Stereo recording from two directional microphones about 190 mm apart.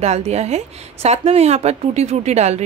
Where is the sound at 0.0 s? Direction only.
35° right (ahead or behind).